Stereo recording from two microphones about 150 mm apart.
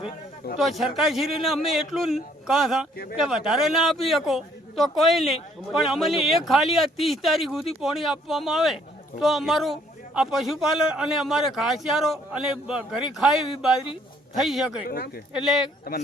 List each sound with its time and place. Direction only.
0.6 s a man's voice: centre (ahead or behind)
14.8 s speech: 90° left
15.3 s a man's voice: 5° right (ahead or behind)
15.9 s a man's voice: 80° left